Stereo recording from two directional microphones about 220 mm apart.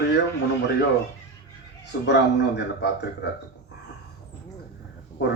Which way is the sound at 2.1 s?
50° left (ahead or behind).